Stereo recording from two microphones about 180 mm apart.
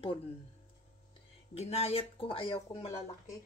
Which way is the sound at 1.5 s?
35° left (ahead or behind).